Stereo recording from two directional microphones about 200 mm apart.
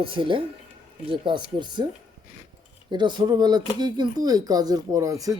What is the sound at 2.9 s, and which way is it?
Speech, 20° right (ahead or behind).